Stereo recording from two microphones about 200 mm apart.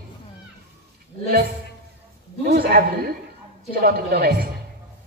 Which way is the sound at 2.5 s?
50° right (ahead or behind).